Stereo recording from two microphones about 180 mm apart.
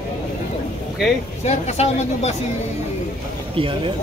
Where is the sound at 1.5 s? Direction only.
40° left (ahead or behind).